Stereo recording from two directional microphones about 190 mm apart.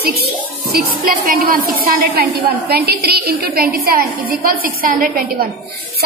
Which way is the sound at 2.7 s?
55° right (ahead or behind).